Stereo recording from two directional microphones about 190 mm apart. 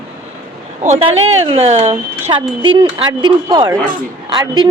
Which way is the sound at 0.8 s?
35° right (ahead or behind).